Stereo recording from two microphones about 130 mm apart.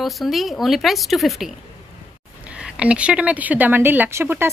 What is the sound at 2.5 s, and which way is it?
Speech, 10° right (ahead or behind).